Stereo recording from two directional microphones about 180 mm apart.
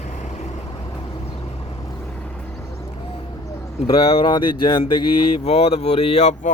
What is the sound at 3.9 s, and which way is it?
Speech, 30° left (ahead or behind).